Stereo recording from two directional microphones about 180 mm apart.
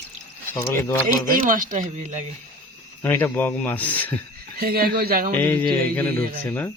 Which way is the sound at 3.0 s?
15° left (ahead or behind).